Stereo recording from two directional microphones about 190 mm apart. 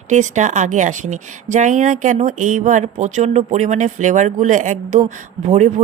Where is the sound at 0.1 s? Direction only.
40° right (ahead or behind).